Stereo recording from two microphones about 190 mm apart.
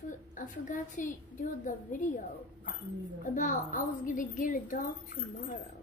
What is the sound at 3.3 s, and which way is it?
A woman's voice, 40° left (ahead or behind).